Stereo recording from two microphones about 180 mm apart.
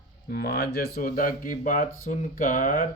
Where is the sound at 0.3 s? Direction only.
60° left (ahead or behind).